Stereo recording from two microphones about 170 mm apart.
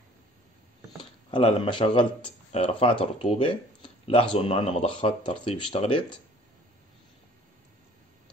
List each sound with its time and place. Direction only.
1.3 s speech: 30° left (ahead or behind)